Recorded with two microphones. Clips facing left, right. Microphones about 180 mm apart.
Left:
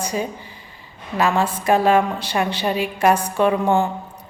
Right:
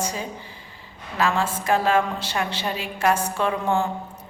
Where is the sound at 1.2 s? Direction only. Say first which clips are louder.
Left 4 dB; 20° left (ahead or behind).